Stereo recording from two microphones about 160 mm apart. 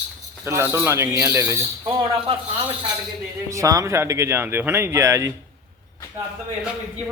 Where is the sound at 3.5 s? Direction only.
20° right (ahead or behind).